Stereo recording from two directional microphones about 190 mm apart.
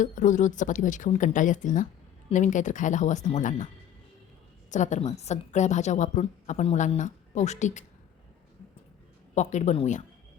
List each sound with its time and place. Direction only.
0.0 s a woman's voice: 40° left (ahead or behind)
4.7 s a woman's voice: 40° left (ahead or behind)
9.3 s a woman's voice: 40° left (ahead or behind)